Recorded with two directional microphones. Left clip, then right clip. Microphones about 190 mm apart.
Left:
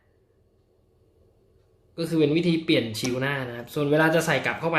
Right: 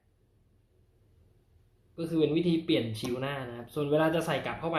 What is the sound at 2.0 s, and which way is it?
Speech, 40° left (ahead or behind).